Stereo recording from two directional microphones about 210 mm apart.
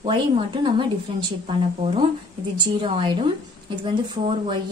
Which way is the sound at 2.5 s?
25° right (ahead or behind).